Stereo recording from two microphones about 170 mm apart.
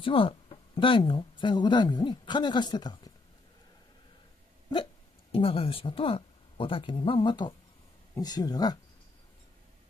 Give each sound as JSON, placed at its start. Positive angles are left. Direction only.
{"t": 0.0, "sound": "speech", "side_deg": 30}
{"t": 5.3, "sound": "speech", "side_deg": 35}